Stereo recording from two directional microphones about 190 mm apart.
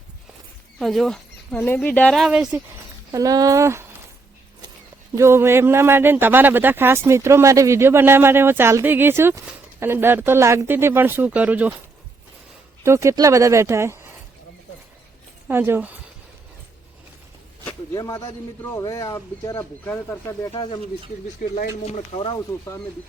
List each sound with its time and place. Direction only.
0.8 s speech: centre (ahead or behind)
3.1 s a man's voice: 20° right (ahead or behind)
5.1 s a man's voice: 15° right (ahead or behind)
12.8 s a man's voice: 15° right (ahead or behind)
15.4 s a man's voice: 10° right (ahead or behind)
17.9 s speech: 20° left (ahead or behind)
20.5 s speech: 25° left (ahead or behind)
21.8 s speech: 35° left (ahead or behind)